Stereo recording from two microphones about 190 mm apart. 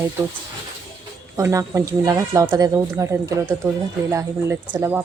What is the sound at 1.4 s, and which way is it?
Speech, 15° right (ahead or behind).